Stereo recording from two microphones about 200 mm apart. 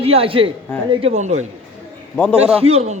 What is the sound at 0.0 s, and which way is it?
Speech, 30° right (ahead or behind).